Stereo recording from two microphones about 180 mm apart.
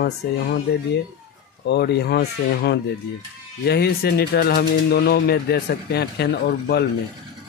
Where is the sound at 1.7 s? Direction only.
65° left (ahead or behind).